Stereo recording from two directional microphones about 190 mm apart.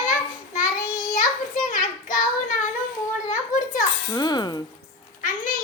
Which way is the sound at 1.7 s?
45° left (ahead or behind).